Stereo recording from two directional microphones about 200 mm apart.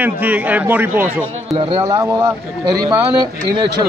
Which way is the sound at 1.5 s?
25° right (ahead or behind).